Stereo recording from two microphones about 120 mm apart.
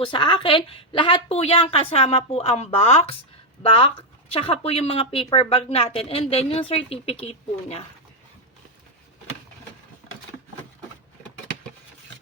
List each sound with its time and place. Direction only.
0.0 s a woman's voice: 40° left (ahead or behind); by 7.8 s 55° left (ahead or behind)